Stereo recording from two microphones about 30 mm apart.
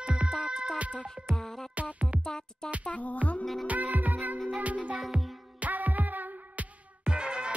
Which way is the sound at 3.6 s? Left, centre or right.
Right.